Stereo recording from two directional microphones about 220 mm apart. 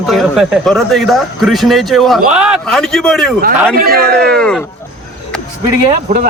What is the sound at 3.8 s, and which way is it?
Speech, 45° right (ahead or behind).